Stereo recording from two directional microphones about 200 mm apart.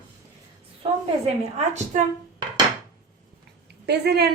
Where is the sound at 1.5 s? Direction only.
35° right (ahead or behind).